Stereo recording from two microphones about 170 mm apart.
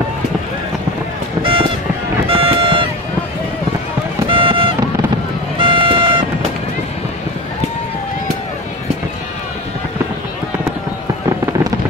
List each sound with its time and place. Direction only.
1.4 s music: 30° right (ahead or behind)
2.2 s vehicle: 30° right (ahead or behind)
4.3 s music: 30° right (ahead or behind)
5.6 s vehicle: 30° right (ahead or behind)